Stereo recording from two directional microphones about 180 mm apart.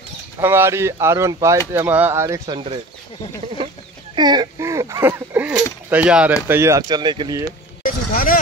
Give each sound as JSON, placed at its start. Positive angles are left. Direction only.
{"t": 0.4, "sound": "speech", "side_deg": -15}
{"t": 2.4, "sound": "speech", "side_deg": -25}
{"t": 4.1, "sound": "speech", "side_deg": -25}
{"t": 7.8, "sound": "a sound", "side_deg": 50}